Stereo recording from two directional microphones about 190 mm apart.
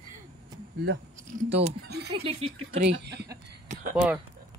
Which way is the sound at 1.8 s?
60° right (ahead or behind).